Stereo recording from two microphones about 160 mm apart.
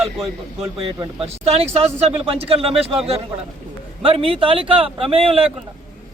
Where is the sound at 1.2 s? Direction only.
40° right (ahead or behind).